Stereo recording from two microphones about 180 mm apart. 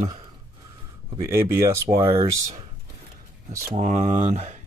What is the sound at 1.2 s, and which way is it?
Speech, 15° right (ahead or behind).